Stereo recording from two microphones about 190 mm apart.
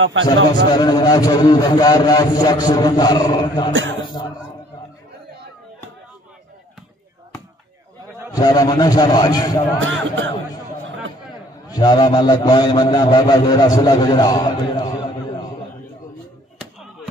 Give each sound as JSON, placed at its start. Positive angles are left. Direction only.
{"t": 0.0, "sound": "a man's voice", "side_deg": -80}
{"t": 0.7, "sound": "a man's voice", "side_deg": 20}
{"t": 8.3, "sound": "a man's voice", "side_deg": 20}
{"t": 9.8, "sound": "speech", "side_deg": -90}
{"t": 11.7, "sound": "a man's voice", "side_deg": 20}